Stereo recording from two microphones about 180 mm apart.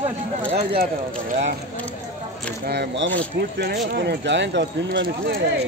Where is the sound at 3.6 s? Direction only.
65° right (ahead or behind).